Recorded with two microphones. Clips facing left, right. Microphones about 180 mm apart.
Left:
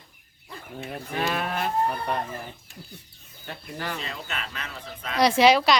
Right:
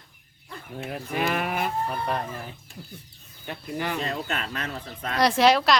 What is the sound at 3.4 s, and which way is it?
Speech, 10° right (ahead or behind).